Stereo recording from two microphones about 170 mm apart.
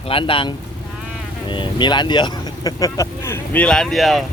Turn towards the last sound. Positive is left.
turn(degrees=0)  # may be behind; listen again after turning